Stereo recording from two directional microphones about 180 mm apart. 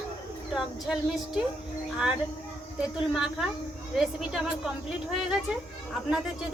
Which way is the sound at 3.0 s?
5° right (ahead or behind).